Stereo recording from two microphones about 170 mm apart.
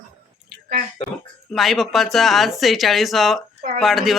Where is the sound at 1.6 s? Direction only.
Centre (ahead or behind).